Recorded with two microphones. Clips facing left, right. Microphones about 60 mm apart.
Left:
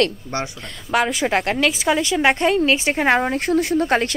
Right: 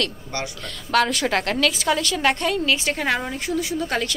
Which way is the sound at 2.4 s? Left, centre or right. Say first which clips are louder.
Left 5 dB; left.